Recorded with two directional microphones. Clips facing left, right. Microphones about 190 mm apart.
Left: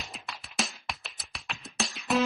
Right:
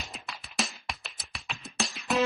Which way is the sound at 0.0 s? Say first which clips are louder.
Even; centre (ahead or behind).